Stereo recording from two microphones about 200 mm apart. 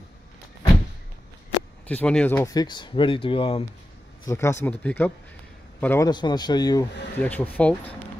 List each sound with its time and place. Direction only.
1.9 s speech: 5° left (ahead or behind); by 3.6 s 25° left (ahead or behind)
4.3 s a man's voice: 15° left (ahead or behind)
6.0 s speech: 20° left (ahead or behind)
7.2 s speech: 10° left (ahead or behind)